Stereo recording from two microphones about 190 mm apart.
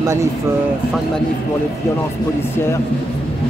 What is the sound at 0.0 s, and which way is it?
Speech, 15° right (ahead or behind).